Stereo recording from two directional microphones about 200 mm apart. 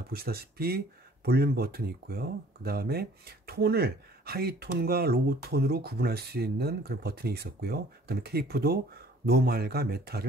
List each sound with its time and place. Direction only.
0.1 s speech: 50° right (ahead or behind)